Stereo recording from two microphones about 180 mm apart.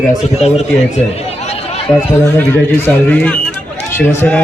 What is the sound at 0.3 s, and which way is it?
Speech, 35° left (ahead or behind).